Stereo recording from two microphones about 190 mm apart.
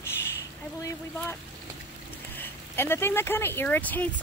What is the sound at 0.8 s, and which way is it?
Speech, 15° left (ahead or behind).